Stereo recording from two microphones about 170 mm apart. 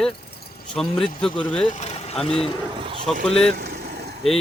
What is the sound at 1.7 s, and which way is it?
Vehicle, 40° left (ahead or behind).